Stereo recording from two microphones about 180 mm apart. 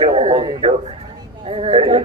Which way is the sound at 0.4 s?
25° right (ahead or behind).